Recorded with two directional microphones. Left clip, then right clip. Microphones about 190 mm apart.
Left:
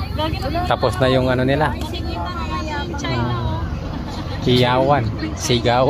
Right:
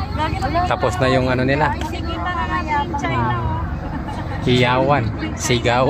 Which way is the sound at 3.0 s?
25° right (ahead or behind).